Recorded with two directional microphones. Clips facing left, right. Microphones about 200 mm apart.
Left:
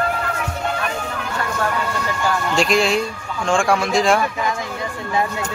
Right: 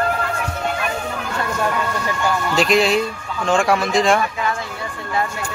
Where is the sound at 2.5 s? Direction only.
Centre (ahead or behind).